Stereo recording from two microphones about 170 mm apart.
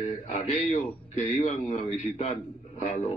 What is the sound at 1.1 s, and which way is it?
A man's voice, 40° left (ahead or behind).